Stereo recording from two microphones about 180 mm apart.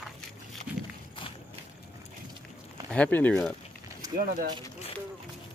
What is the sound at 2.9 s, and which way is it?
Speech, 10° left (ahead or behind).